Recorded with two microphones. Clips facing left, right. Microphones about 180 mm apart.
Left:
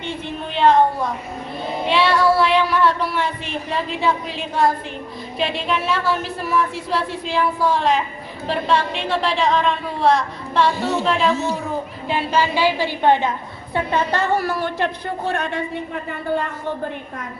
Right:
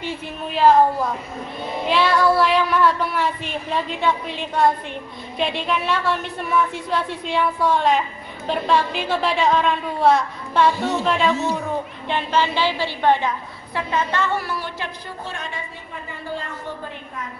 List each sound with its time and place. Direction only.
0.6 s a sound: 5° right (ahead or behind)
1.9 s child singing: centre (ahead or behind)
3.7 s a woman's voice: centre (ahead or behind); by 13.3 s 15° left (ahead or behind)
13.7 s a woman's voice: 35° left (ahead or behind); by 15.6 s 60° left (ahead or behind)